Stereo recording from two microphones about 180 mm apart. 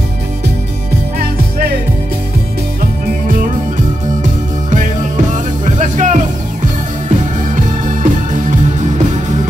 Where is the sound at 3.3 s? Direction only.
50° right (ahead or behind).